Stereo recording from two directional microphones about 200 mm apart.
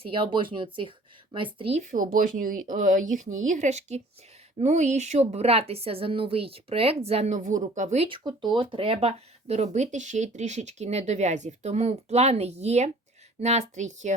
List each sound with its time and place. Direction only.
0.1 s speech: 25° right (ahead or behind)